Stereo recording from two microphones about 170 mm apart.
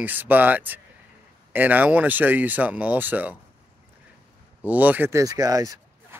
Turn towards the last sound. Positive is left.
turn(degrees=-20)  # may be behind; listen again after turning